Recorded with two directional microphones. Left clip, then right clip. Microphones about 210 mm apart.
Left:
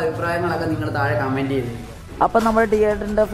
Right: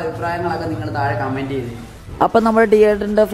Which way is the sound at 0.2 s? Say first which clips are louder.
Right 1 dB; centre (ahead or behind).